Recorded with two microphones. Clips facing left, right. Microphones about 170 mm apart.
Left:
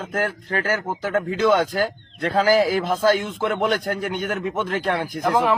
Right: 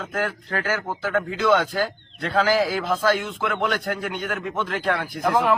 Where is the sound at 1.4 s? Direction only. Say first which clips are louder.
Left 2 dB; 40° left (ahead or behind).